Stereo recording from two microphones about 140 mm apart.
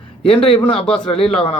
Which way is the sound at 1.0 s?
45° left (ahead or behind).